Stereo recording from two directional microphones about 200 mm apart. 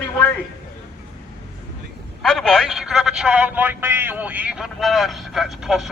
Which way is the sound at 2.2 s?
5° left (ahead or behind).